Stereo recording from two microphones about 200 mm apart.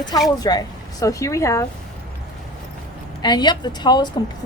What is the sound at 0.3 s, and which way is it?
Speech, 20° left (ahead or behind).